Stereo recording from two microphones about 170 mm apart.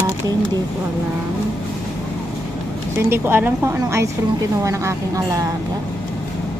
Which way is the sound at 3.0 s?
15° right (ahead or behind).